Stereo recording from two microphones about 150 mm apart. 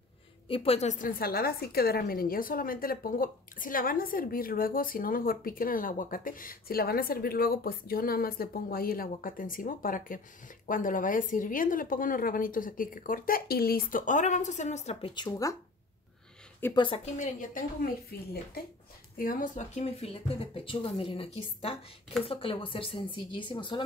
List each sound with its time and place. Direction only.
0.5 s a woman's voice: 40° left (ahead or behind)
15.2 s speech: 20° left (ahead or behind)
16.7 s speech: 40° left (ahead or behind); by 17.6 s 55° left (ahead or behind)
19.1 s speech: 65° left (ahead or behind); by 23.8 s 30° left (ahead or behind)